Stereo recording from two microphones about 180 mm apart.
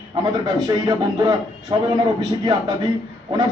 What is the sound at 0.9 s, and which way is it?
A man's voice, 20° right (ahead or behind).